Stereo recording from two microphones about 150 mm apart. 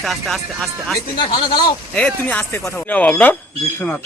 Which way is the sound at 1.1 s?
30° left (ahead or behind).